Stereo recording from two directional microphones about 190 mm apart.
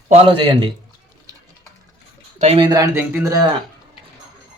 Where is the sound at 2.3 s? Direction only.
35° right (ahead or behind).